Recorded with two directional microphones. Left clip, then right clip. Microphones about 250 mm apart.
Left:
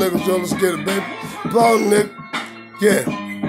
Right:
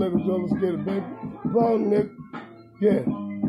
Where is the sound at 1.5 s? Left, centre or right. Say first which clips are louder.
Left 8 dB; left.